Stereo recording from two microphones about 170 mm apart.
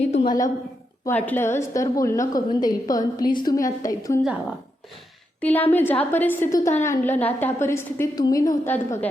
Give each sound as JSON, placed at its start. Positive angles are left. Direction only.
{"t": 0.1, "sound": "a sound", "side_deg": 35}
{"t": 1.0, "sound": "a woman's voice", "side_deg": 10}
{"t": 5.4, "sound": "a woman's voice", "side_deg": 10}